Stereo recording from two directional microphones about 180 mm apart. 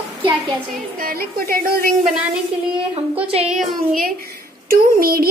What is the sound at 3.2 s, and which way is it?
Speech, 35° right (ahead or behind).